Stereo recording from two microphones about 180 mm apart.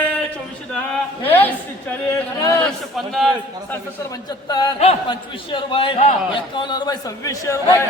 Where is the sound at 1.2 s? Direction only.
10° left (ahead or behind).